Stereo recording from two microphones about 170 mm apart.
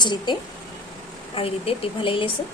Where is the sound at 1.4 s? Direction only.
35° left (ahead or behind).